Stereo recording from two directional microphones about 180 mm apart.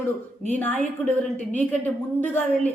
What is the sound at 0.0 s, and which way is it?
A woman's voice, 10° left (ahead or behind).